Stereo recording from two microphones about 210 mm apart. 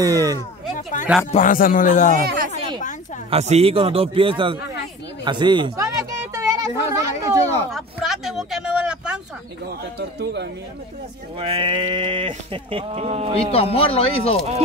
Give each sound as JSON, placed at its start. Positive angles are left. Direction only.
{"t": 0.0, "sound": "speech", "side_deg": -15}
{"t": 1.3, "sound": "a man's voice", "side_deg": 40}
{"t": 2.2, "sound": "a sound", "side_deg": -45}
{"t": 3.3, "sound": "speech", "side_deg": -30}
{"t": 5.2, "sound": "a sound", "side_deg": -20}
{"t": 7.7, "sound": "a sound", "side_deg": 0}
{"t": 9.9, "sound": "speech", "side_deg": -55}
{"t": 11.3, "sound": "speech", "side_deg": -25}
{"t": 13.5, "sound": "speech", "side_deg": 30}